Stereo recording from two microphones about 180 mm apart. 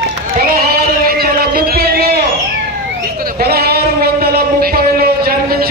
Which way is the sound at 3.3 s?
60° right (ahead or behind).